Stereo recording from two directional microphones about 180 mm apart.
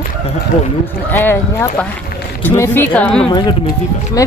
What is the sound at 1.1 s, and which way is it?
Speech, 10° left (ahead or behind).